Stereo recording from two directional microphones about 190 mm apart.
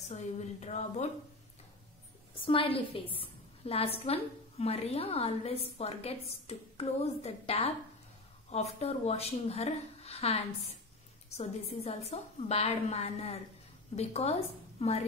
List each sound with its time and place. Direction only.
0.1 s a woman's voice: 35° left (ahead or behind)
2.3 s a woman's voice: 30° left (ahead or behind)